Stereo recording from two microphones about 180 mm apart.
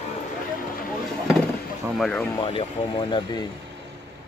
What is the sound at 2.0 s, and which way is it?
Speech, 5° left (ahead or behind).